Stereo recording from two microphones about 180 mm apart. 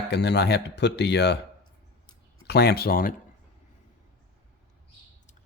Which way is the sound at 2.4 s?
60° left (ahead or behind).